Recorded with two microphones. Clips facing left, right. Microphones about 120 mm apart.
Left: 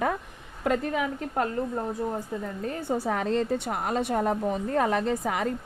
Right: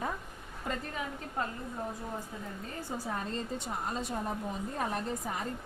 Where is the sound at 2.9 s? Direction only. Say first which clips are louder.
Left 10 dB; 80° left.